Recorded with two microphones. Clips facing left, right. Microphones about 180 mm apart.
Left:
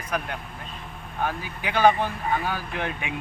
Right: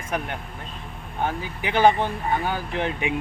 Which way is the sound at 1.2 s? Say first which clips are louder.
Right 2 dB; 20° right (ahead or behind).